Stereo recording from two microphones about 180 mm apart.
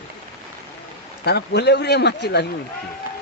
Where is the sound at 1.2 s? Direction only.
65° left (ahead or behind).